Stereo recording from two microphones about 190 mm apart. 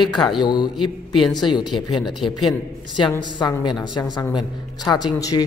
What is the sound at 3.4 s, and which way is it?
A man's voice, 20° left (ahead or behind).